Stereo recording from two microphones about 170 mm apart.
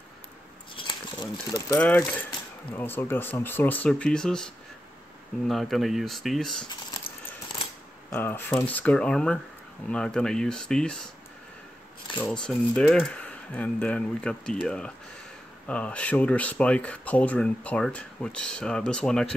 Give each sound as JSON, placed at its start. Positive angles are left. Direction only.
{"t": 0.7, "sound": "crumpling", "side_deg": 30}
{"t": 1.8, "sound": "speech", "side_deg": 5}
{"t": 8.1, "sound": "speech", "side_deg": 10}
{"t": 12.3, "sound": "speech", "side_deg": 5}